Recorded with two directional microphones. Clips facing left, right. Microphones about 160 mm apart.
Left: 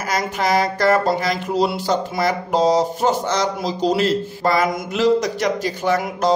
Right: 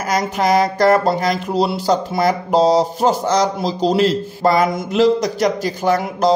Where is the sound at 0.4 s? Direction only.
45° right (ahead or behind).